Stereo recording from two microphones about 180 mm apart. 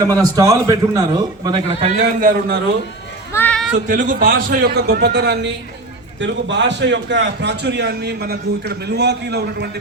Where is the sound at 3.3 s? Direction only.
10° left (ahead or behind).